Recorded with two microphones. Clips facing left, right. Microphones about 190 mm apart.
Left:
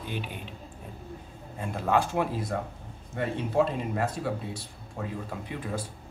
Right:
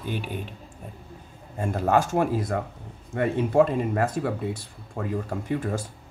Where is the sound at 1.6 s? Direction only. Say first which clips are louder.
Right 4 dB; 45° right (ahead or behind).